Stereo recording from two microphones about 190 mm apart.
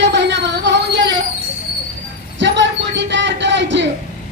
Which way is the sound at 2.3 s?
70° right (ahead or behind).